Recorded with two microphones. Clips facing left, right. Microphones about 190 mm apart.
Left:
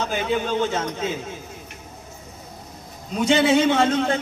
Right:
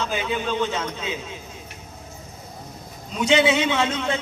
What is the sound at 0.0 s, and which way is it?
A man's voice, 50° left (ahead or behind).